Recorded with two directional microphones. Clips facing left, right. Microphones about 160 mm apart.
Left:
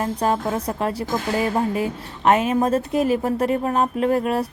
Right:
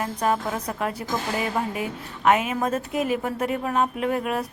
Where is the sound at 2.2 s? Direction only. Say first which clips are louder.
Left 4 dB; 35° left (ahead or behind).